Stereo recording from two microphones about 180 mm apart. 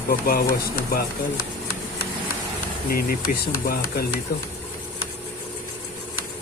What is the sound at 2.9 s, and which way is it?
Speech, 55° left (ahead or behind).